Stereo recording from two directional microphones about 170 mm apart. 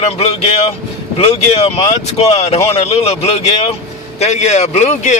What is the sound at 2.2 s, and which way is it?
Speech, 40° left (ahead or behind).